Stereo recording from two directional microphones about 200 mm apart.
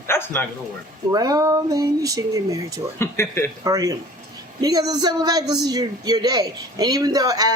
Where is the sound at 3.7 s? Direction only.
15° right (ahead or behind).